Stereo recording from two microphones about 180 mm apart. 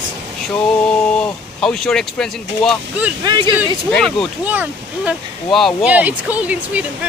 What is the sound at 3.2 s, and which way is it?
Speech, 25° right (ahead or behind).